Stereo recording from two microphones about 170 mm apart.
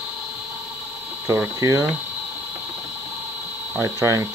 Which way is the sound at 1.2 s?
20° right (ahead or behind).